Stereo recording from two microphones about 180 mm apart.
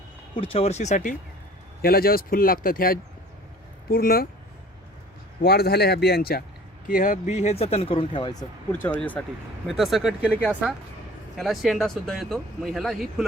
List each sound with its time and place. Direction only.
0.3 s speech: 30° left (ahead or behind)
1.8 s a man's voice: 55° left (ahead or behind)
5.4 s a man's voice: 60° left (ahead or behind)
6.8 s speech: 50° left (ahead or behind); by 8.4 s 25° left (ahead or behind)
9.0 s speech: 5° left (ahead or behind)